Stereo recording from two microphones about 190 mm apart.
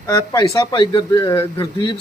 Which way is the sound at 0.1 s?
15° left (ahead or behind).